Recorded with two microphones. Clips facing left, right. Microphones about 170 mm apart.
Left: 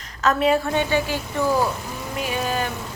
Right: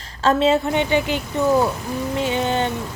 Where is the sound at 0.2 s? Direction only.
25° right (ahead or behind).